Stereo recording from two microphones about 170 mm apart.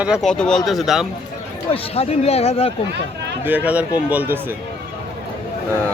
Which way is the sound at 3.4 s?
10° right (ahead or behind).